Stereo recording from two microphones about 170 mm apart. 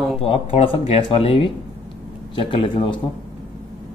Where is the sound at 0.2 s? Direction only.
35° left (ahead or behind).